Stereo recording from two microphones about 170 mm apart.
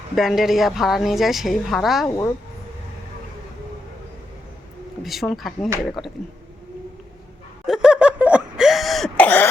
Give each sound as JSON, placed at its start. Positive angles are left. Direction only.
{"t": 0.2, "sound": "a woman's voice", "side_deg": 0}
{"t": 2.0, "sound": "a woman's voice", "side_deg": 15}
{"t": 5.3, "sound": "a woman's voice", "side_deg": 0}
{"t": 7.7, "sound": "a sound", "side_deg": -5}